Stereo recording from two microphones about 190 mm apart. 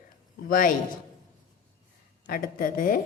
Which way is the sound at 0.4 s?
45° left (ahead or behind).